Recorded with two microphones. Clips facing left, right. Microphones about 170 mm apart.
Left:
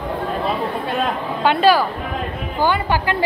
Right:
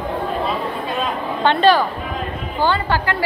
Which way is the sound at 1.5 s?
5° left (ahead or behind).